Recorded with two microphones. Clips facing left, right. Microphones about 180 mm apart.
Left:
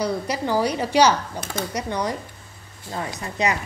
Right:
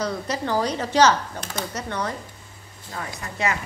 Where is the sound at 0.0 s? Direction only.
10° left (ahead or behind).